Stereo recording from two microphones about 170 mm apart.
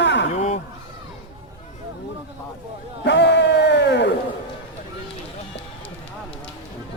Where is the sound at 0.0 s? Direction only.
90° left.